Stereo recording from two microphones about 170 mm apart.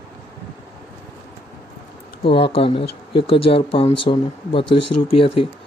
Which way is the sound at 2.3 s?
35° left (ahead or behind).